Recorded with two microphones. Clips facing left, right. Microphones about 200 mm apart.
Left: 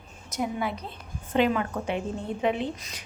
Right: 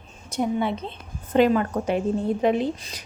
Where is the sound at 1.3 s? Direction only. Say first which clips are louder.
Right 5 dB; 40° right (ahead or behind).